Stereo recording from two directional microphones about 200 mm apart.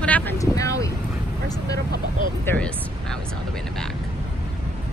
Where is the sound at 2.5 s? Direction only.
10° left (ahead or behind).